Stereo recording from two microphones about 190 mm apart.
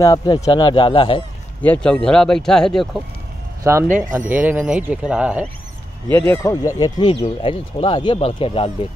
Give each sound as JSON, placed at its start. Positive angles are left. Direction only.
{"t": 0.0, "sound": "speech", "side_deg": 20}
{"t": 1.6, "sound": "speech", "side_deg": 5}
{"t": 3.6, "sound": "speech", "side_deg": -15}
{"t": 6.1, "sound": "speech", "side_deg": 10}